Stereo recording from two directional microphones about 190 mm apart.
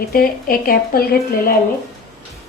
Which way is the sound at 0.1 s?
50° left (ahead or behind).